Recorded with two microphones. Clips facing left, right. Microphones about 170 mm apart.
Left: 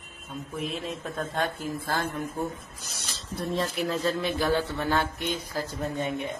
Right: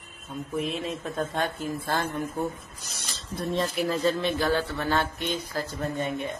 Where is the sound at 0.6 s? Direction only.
Centre (ahead or behind).